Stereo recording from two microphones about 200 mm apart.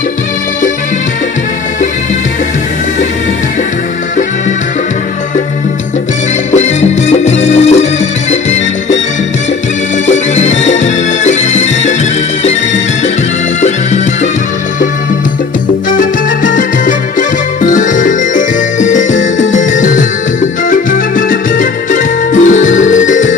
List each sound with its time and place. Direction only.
6.5 s music: 35° left (ahead or behind)
10.0 s music: 35° left (ahead or behind)
13.6 s music: 35° left (ahead or behind)
16.0 s music: 40° left (ahead or behind)